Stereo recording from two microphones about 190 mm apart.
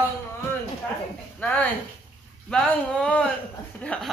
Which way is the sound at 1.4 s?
5° left (ahead or behind).